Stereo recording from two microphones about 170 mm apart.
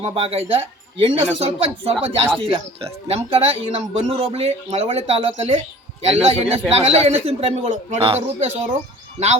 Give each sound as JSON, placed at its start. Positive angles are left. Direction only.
{"t": 0.0, "sound": "speech", "side_deg": -30}